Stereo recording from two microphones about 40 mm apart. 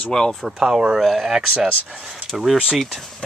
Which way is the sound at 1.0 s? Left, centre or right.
Centre.